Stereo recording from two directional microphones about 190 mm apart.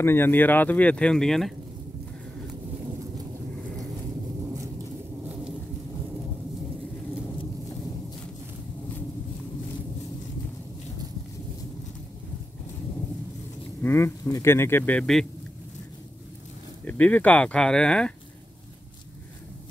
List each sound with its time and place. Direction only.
0.0 s speech: 10° left (ahead or behind)
13.8 s speech: 15° left (ahead or behind)
16.8 s speech: 10° left (ahead or behind)